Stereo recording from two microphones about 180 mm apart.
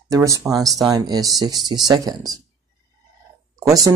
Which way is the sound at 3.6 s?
20° right (ahead or behind).